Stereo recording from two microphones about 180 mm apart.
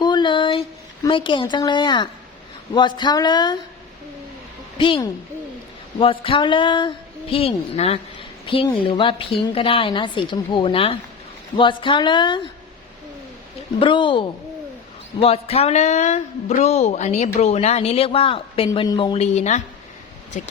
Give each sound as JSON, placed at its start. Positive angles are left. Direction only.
{"t": 0.0, "sound": "a sound", "side_deg": 25}
{"t": 1.0, "sound": "a woman's voice", "side_deg": 25}
{"t": 4.8, "sound": "a woman's voice", "side_deg": 30}
{"t": 13.7, "sound": "a woman's voice", "side_deg": 30}